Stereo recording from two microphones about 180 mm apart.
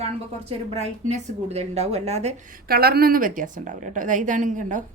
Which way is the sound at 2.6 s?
60° right (ahead or behind).